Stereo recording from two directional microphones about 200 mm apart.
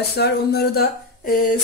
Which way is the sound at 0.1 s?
55° left (ahead or behind).